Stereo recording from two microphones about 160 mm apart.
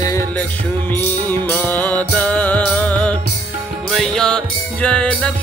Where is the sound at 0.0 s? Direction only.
20° left (ahead or behind).